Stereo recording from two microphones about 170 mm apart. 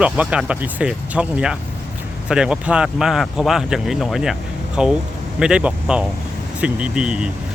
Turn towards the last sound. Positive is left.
turn(degrees=-5)  # may be behind; listen again after turning